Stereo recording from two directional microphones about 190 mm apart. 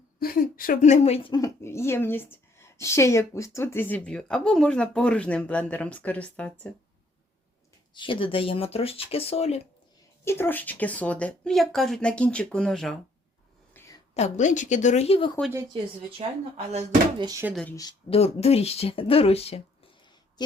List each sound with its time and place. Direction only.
0.2 s a woman's voice: 50° left (ahead or behind); by 6.7 s 5° left (ahead or behind)
7.9 s speech: 25° left (ahead or behind)
10.2 s speech: 10° left (ahead or behind)
13.7 s a sound: 10° left (ahead or behind)
14.1 s speech: 35° left (ahead or behind)
15.5 s speech: 25° right (ahead or behind)
17.2 s speech: 15° right (ahead or behind)
17.5 s speech: 5° left (ahead or behind)
17.7 s speech: 20° left (ahead or behind)
18.2 s speech: 30° left (ahead or behind)